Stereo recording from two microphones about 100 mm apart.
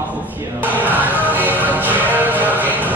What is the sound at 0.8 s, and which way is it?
Music, 15° right (ahead or behind).